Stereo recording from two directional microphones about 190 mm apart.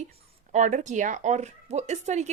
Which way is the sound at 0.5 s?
40° right (ahead or behind).